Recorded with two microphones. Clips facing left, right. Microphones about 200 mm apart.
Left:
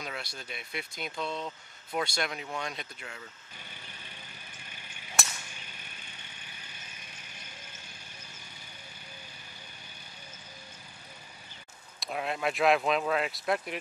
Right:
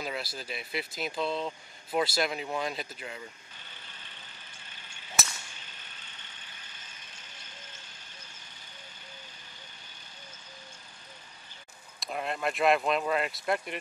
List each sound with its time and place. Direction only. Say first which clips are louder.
0.0 s speech: right 4 dB; 5° right (ahead or behind)
3.5 s vehicle: left 3 dB; 10° left (ahead or behind)
12.0 s speech: even; centre (ahead or behind)